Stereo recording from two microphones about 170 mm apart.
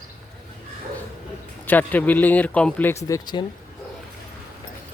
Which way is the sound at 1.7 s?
10° left (ahead or behind).